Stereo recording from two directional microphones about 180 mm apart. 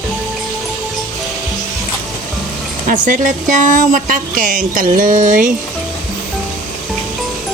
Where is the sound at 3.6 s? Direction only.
45° right (ahead or behind).